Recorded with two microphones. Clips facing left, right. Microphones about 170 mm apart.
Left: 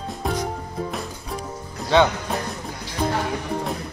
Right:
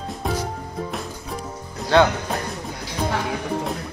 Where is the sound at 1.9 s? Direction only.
Centre (ahead or behind).